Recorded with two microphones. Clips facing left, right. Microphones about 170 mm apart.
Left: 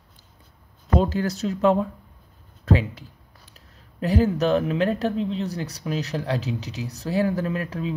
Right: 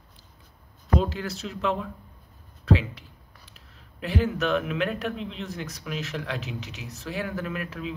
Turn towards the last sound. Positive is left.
turn(degrees=35)  # may be behind; listen again after turning